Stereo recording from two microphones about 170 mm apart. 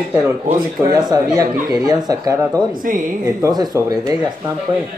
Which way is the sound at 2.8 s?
55° right (ahead or behind).